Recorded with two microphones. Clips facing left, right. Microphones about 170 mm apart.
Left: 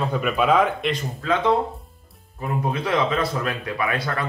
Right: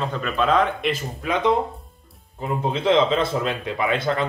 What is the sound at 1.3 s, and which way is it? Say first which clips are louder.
Speech: even; 20° right (ahead or behind).